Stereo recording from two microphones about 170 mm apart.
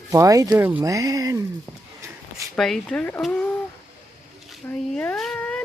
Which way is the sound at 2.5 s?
Centre (ahead or behind).